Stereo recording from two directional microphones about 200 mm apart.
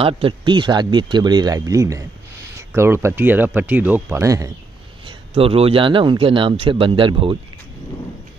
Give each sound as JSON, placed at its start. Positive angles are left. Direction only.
{"t": 0.0, "sound": "a man's voice", "side_deg": -25}
{"t": 5.0, "sound": "a man's voice", "side_deg": -30}